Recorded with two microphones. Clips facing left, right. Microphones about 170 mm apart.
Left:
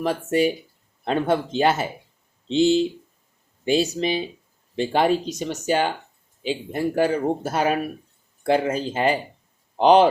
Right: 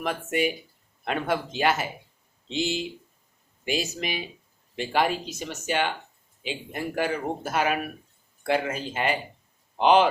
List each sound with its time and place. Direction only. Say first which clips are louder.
0.0 s speech: left 6 dB; 35° left (ahead or behind)